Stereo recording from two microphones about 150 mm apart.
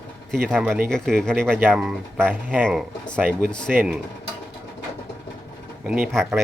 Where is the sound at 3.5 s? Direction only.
5° left (ahead or behind).